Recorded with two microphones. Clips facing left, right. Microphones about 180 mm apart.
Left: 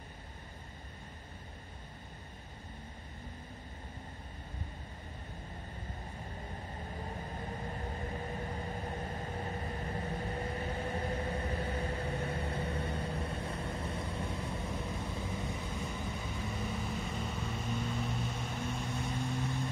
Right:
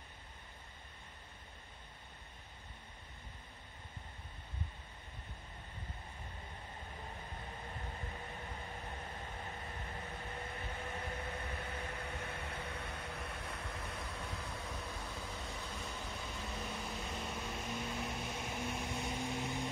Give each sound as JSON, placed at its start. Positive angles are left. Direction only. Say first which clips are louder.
{"t": 8.4, "sound": "vehicle", "louder": "left 8 dB", "side_deg": 40}
{"t": 15.9, "sound": "vehicle", "louder": "left 5 dB", "side_deg": 5}